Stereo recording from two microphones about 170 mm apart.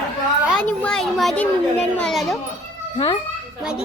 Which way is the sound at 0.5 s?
5° left (ahead or behind).